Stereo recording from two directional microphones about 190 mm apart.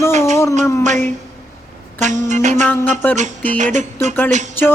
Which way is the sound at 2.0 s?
40° right (ahead or behind).